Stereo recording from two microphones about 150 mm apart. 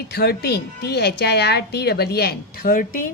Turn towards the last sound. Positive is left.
turn(degrees=70)  # may be behind; listen again after turning